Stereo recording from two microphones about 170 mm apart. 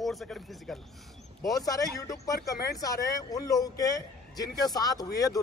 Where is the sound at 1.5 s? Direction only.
20° left (ahead or behind).